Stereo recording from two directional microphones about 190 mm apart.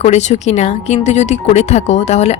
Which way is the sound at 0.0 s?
35° left (ahead or behind).